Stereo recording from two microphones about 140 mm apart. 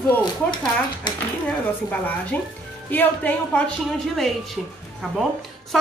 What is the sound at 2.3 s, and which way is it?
A woman's voice, 10° left (ahead or behind).